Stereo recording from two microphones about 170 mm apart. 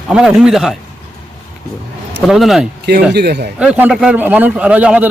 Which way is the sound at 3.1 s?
75° right (ahead or behind).